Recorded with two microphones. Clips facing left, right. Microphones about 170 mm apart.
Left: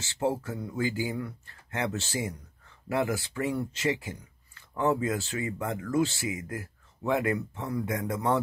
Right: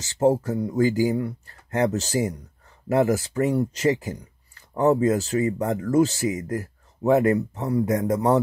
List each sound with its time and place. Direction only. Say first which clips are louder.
0.0 s speech: right 9 dB; 40° right (ahead or behind)